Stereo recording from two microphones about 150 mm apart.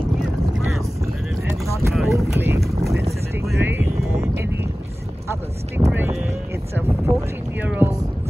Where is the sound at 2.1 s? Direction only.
20° right (ahead or behind).